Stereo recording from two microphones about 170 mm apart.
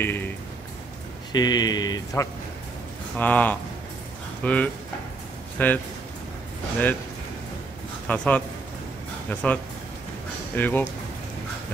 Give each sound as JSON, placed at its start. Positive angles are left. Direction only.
{"t": 0.0, "sound": "speech", "side_deg": 15}
{"t": 1.3, "sound": "speech", "side_deg": 25}
{"t": 3.2, "sound": "speech", "side_deg": 10}
{"t": 8.1, "sound": "speech", "side_deg": 10}